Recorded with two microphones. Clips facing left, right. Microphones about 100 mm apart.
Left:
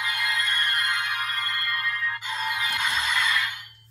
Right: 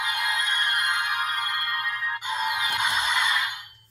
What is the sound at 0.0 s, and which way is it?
Music, 20° right (ahead or behind).